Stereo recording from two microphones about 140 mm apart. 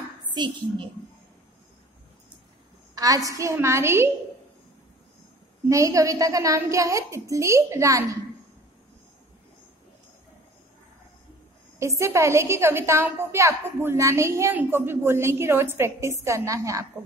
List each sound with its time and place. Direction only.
0.3 s a woman's voice: 30° right (ahead or behind)
2.9 s a sound: 25° right (ahead or behind)
3.3 s a woman's voice: 20° right (ahead or behind)
5.7 s a woman's voice: 25° right (ahead or behind)
12.0 s a woman's voice: 20° right (ahead or behind)